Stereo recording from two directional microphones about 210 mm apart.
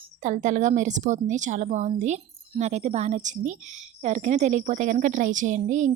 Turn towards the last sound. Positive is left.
turn(degrees=-35)  # may be behind; listen again after turning